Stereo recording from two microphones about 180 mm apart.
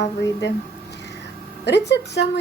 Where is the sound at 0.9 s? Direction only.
70° left (ahead or behind).